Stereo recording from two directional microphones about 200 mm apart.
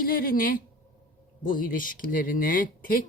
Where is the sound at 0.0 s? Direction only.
45° left (ahead or behind).